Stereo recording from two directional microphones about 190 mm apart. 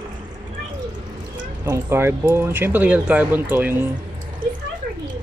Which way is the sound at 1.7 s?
15° right (ahead or behind).